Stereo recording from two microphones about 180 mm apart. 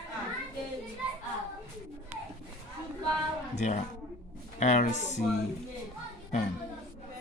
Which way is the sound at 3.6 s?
40° left (ahead or behind).